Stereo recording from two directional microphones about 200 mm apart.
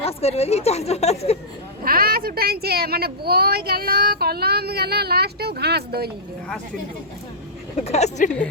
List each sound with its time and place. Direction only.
0.0 s speech: 30° left (ahead or behind)
1.8 s speech: 50° right (ahead or behind)
7.9 s speech: 35° left (ahead or behind)